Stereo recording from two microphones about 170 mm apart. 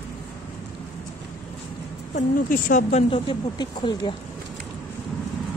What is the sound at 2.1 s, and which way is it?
Speech, 50° left (ahead or behind).